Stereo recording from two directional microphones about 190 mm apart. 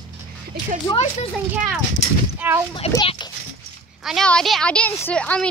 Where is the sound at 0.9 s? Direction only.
20° left (ahead or behind).